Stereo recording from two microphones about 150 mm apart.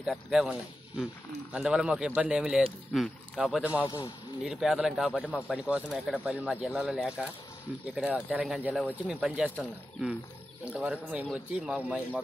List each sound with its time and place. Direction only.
0.0 s speech: 5° right (ahead or behind)
3.8 s a man's voice: 25° left (ahead or behind)
4.4 s speech: 5° right (ahead or behind)